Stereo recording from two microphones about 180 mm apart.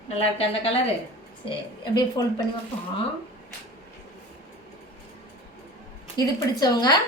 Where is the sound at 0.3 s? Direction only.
35° left (ahead or behind).